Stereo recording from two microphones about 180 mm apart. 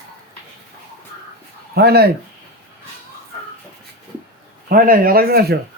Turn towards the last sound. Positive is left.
turn(degrees=-60)  # may be behind; listen again after turning